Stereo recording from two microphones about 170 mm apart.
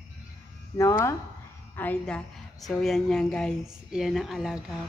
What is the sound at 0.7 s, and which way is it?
A woman's voice, 15° left (ahead or behind).